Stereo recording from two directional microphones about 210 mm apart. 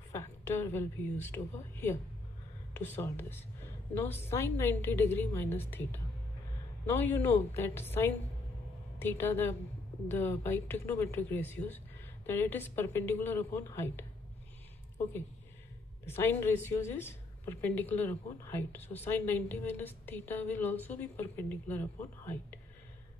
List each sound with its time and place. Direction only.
0.1 s a woman's voice: 10° left (ahead or behind)
16.1 s a woman's voice: 10° left (ahead or behind)